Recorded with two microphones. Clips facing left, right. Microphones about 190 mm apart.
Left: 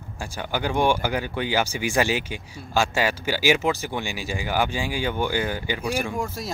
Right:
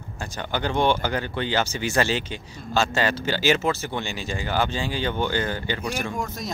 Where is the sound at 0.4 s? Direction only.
10° left (ahead or behind).